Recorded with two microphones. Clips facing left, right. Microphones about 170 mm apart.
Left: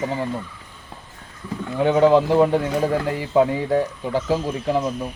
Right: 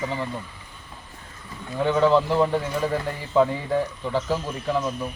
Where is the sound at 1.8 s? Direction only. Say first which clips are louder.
Left 4 dB; 15° left (ahead or behind).